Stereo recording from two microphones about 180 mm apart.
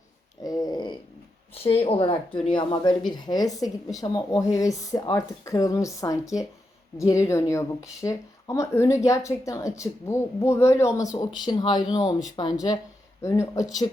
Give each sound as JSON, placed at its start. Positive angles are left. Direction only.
{"t": 0.4, "sound": "a woman's voice", "side_deg": 20}